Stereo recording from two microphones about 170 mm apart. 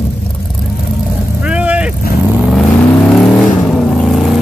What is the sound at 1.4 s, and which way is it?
Vehicle, 5° right (ahead or behind).